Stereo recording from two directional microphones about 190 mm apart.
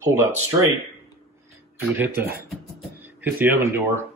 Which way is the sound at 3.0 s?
10° right (ahead or behind).